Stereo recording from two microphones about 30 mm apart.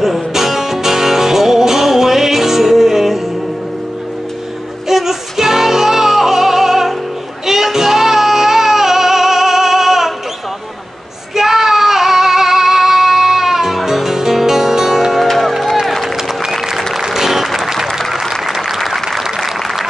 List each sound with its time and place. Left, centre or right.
0.0 s music: centre
4.8 s music: centre
11.3 s female singing: centre
15.2 s music: centre
15.5 s music: centre
16.2 s music: centre
18.3 s applause: centre